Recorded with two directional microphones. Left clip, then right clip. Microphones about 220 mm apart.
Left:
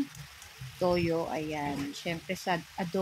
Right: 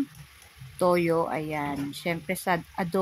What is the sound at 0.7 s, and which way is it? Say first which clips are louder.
Speech: right 5 dB; 20° right (ahead or behind).